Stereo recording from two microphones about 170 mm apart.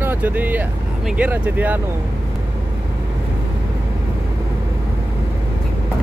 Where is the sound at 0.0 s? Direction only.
10° right (ahead or behind).